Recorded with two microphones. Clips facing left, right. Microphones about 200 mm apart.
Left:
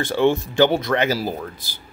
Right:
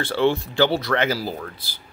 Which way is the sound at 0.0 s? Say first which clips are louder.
Left 2 dB; 15° left (ahead or behind).